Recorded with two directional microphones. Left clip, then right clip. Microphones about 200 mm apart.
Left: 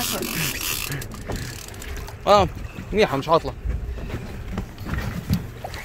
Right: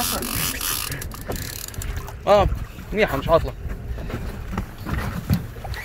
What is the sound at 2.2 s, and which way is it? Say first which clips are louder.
Speech: even; 30° left (ahead or behind).